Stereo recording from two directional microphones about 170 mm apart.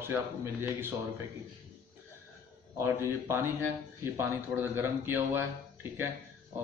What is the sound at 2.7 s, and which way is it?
A man's voice, 15° right (ahead or behind).